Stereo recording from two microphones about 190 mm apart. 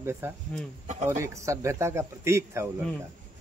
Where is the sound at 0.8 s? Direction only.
40° right (ahead or behind).